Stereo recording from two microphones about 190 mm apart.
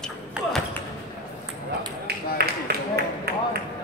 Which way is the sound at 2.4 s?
55° right (ahead or behind).